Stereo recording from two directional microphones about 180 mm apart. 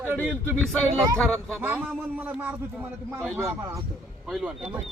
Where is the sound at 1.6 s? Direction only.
10° right (ahead or behind).